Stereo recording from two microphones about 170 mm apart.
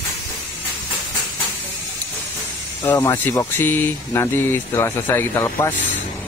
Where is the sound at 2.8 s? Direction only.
10° left (ahead or behind).